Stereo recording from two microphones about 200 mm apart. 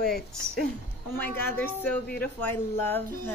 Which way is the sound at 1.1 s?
10° left (ahead or behind).